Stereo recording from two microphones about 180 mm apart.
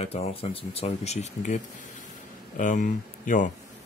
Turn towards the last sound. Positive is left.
turn(degrees=45)  # may be behind; listen again after turning